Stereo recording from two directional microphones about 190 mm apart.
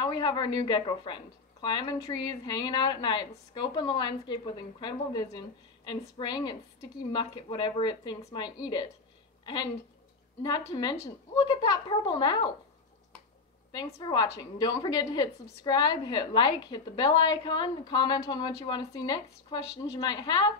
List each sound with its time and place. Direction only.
0.0 s a woman's voice: 20° left (ahead or behind)
13.7 s a woman's voice: 20° left (ahead or behind)